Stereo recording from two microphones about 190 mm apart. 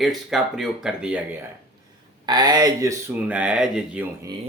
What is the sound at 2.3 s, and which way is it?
Speech, 20° right (ahead or behind).